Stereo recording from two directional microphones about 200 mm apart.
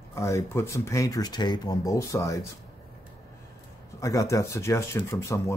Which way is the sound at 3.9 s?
15° left (ahead or behind).